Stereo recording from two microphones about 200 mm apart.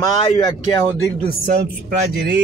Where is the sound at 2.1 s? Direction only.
50° right (ahead or behind).